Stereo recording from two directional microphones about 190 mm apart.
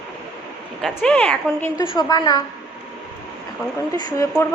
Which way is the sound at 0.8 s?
Centre (ahead or behind).